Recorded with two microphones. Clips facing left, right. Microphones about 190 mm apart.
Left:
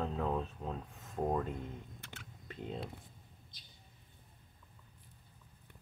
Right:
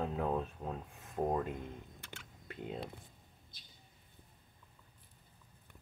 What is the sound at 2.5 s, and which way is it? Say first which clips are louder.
Speech: even; 5° right (ahead or behind).